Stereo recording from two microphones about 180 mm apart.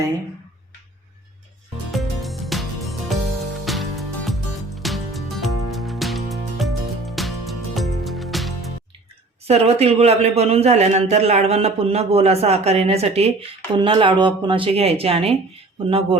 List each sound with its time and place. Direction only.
1.9 s music: centre (ahead or behind)
9.4 s a man's voice: 35° right (ahead or behind)